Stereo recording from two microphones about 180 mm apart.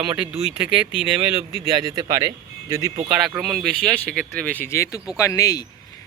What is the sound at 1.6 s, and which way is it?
Speech, 20° right (ahead or behind).